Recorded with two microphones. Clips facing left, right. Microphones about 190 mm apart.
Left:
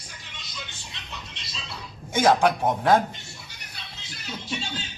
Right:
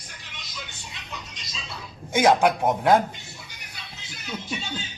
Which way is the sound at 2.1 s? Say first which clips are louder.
Right 1 dB; 15° right (ahead or behind).